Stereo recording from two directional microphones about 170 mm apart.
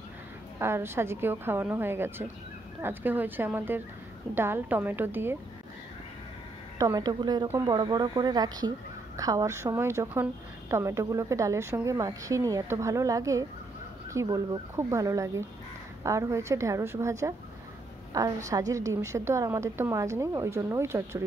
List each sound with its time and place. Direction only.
0.6 s a woman's voice: 15° right (ahead or behind)
6.8 s a woman's voice: 20° right (ahead or behind)